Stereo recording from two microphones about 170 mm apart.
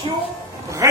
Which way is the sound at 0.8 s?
20° right (ahead or behind).